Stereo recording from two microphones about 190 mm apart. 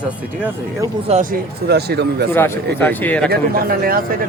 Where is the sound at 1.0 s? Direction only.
40° right (ahead or behind).